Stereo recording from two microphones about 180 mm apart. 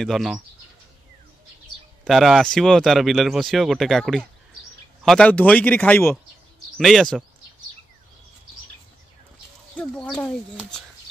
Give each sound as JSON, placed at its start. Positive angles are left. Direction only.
{"t": 0.0, "sound": "speech", "side_deg": 0}
{"t": 2.0, "sound": "speech", "side_deg": 0}
{"t": 9.8, "sound": "speech", "side_deg": 5}